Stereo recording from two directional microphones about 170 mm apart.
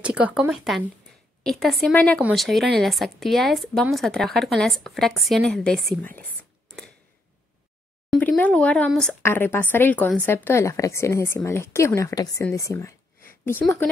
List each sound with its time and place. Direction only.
0.0 s speech: 5° right (ahead or behind)
8.1 s a woman's voice: 5° left (ahead or behind)
12.5 s a sound: 20° left (ahead or behind)